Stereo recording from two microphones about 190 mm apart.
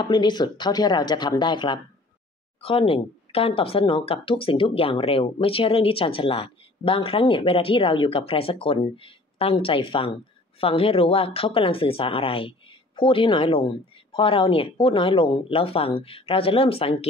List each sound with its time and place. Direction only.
0.0 s speech: 25° left (ahead or behind)